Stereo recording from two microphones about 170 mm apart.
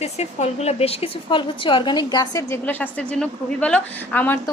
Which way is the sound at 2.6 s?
10° left (ahead or behind).